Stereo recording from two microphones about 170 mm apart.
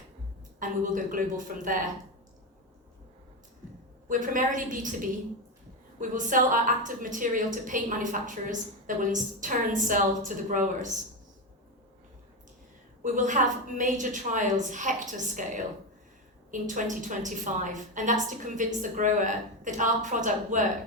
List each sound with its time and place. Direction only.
0.6 s a woman's voice: 50° right (ahead or behind)
4.1 s a woman's voice: 50° right (ahead or behind)
13.0 s a woman's voice: 50° right (ahead or behind)